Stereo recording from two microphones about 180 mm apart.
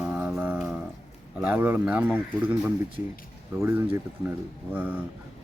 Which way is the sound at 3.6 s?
10° right (ahead or behind).